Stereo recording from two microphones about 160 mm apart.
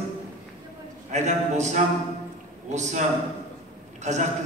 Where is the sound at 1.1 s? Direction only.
50° right (ahead or behind).